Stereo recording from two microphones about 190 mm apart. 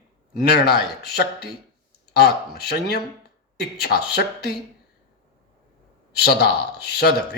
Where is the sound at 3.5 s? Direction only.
60° left (ahead or behind).